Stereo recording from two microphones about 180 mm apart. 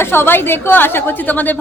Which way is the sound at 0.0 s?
15° left (ahead or behind).